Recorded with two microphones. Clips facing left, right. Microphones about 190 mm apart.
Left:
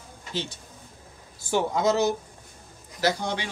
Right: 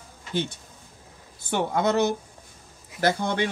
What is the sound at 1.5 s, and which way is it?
Speech, 60° right (ahead or behind).